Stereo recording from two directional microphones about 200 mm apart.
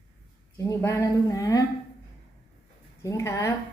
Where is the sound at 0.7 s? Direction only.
15° left (ahead or behind).